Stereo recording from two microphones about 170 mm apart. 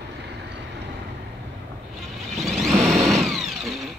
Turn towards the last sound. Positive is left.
turn(degrees=0)  # may be behind; listen again after turning